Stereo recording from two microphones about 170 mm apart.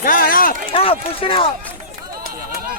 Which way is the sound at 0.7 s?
35° left (ahead or behind).